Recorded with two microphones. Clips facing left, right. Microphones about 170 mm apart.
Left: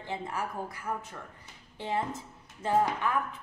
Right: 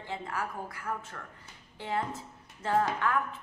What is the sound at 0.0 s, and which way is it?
A woman's voice, 20° left (ahead or behind).